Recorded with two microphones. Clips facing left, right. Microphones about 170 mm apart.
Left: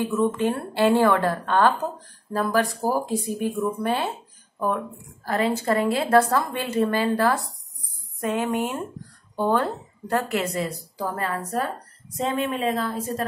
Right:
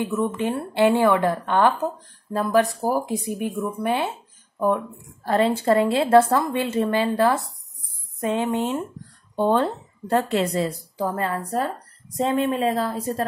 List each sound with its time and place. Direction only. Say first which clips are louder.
0.0 s a woman's voice: left 1 dB; 20° right (ahead or behind)
5.2 s a woman's voice: right 3 dB; 30° right (ahead or behind)